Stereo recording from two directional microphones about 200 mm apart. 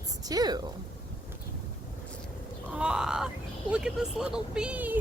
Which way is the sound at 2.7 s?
5° right (ahead or behind).